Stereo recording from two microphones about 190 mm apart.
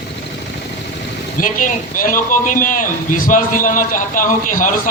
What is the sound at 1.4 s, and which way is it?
A man's voice, 45° left (ahead or behind).